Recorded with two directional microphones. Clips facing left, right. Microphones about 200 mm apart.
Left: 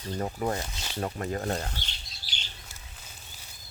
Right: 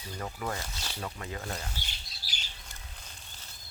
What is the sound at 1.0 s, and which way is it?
Speech, 45° left (ahead or behind).